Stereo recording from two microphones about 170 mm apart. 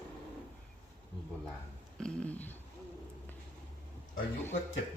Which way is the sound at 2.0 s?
5° left (ahead or behind).